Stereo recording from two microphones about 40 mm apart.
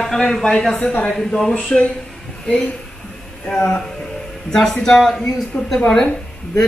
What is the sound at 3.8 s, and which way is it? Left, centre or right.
Music, centre.